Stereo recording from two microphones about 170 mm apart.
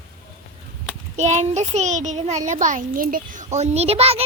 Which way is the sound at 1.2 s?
40° right (ahead or behind).